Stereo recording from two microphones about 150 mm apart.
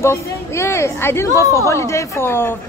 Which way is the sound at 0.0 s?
20° left (ahead or behind).